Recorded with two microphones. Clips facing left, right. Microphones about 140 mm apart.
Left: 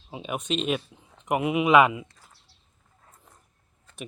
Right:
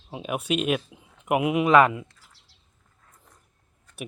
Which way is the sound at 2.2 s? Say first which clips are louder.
Left 2 dB; 90° right.